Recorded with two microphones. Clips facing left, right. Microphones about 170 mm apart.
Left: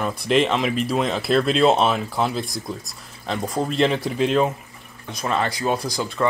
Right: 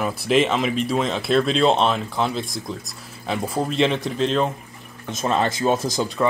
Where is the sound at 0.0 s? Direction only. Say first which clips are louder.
Even; 5° right (ahead or behind).